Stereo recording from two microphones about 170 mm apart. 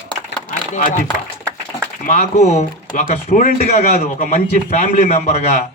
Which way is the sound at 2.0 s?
45° left (ahead or behind).